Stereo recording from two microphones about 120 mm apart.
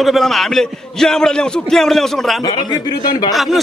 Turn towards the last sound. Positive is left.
turn(degrees=0)  # may be behind; listen again after turning